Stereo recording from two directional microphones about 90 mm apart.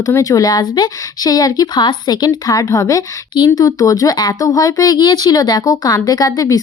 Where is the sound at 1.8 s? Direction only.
55° left (ahead or behind).